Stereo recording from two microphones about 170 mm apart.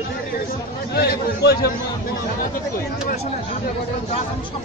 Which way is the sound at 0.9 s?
70° left (ahead or behind).